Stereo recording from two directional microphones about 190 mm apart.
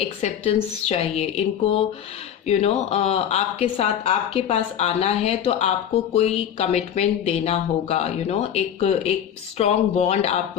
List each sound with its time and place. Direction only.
0.0 s speech: 35° left (ahead or behind)